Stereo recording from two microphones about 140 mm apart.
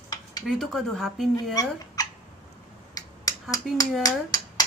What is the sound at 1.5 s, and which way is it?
Speech, 25° left (ahead or behind).